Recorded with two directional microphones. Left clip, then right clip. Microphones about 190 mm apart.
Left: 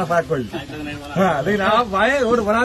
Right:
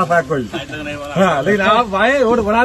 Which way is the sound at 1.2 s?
5° left (ahead or behind).